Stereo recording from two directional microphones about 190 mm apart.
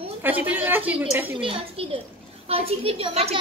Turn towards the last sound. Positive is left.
turn(degrees=-30)  # may be behind; listen again after turning